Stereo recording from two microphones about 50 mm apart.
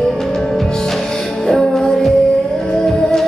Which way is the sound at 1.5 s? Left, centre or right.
Centre.